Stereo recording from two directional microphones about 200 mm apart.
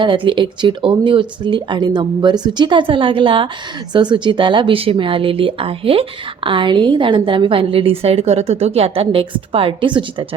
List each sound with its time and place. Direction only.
0.0 s speech: 25° right (ahead or behind)